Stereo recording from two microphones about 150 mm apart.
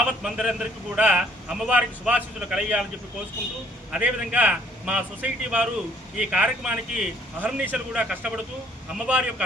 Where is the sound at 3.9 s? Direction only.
5° right (ahead or behind).